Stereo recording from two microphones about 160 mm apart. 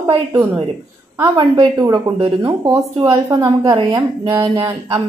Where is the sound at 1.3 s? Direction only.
30° right (ahead or behind).